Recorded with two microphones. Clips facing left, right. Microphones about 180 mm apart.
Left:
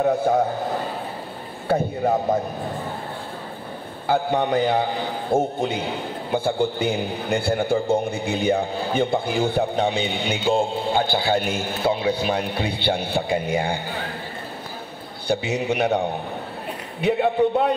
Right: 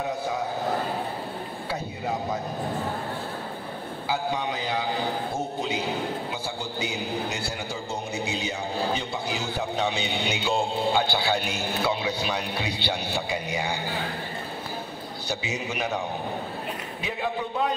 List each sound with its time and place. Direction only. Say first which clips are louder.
0.2 s a man's voice: left 9 dB; 55° left (ahead or behind)
1.7 s a man's voice: left 11 dB; 50° left (ahead or behind)
4.1 s a man's voice: left 8 dB; 55° left (ahead or behind)
15.2 s a man's voice: left 10 dB; 60° left (ahead or behind)